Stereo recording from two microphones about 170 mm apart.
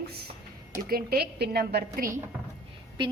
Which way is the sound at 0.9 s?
65° right (ahead or behind).